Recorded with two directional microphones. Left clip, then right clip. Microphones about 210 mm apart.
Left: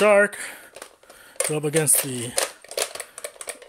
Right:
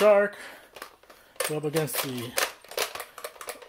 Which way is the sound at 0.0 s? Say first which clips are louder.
Left 3 dB; 40° left (ahead or behind).